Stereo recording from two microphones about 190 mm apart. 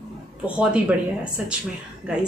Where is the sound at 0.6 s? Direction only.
5° right (ahead or behind).